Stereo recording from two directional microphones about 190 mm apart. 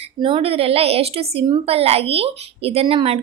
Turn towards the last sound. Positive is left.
turn(degrees=-30)  # may be behind; listen again after turning